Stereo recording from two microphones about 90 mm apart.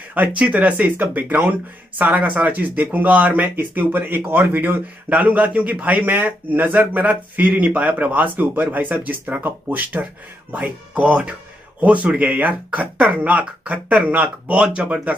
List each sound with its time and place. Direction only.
0.1 s speech: 15° right (ahead or behind)